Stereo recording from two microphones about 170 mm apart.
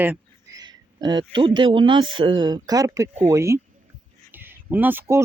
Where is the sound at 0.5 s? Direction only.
25° right (ahead or behind).